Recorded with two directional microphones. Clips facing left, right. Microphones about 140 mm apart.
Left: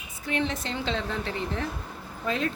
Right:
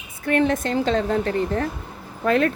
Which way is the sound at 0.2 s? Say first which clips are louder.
Right 9 dB; 50° right (ahead or behind).